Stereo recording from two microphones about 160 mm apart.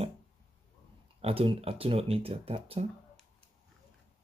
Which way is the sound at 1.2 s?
35° right (ahead or behind).